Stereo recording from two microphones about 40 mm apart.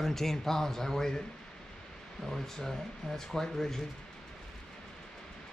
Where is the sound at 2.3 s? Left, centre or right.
Centre.